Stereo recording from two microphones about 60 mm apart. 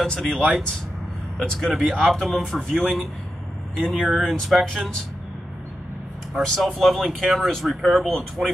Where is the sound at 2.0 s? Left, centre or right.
Centre.